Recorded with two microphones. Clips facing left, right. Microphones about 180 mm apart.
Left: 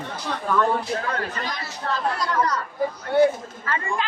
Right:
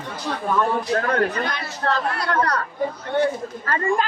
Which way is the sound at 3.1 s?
10° left (ahead or behind).